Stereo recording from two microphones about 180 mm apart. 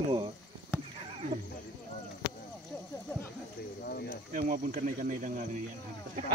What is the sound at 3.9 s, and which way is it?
Cricket, 55° left (ahead or behind).